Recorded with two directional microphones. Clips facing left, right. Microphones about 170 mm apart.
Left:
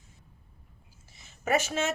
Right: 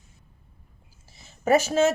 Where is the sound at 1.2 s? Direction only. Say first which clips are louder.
Right 7 dB; 40° right (ahead or behind).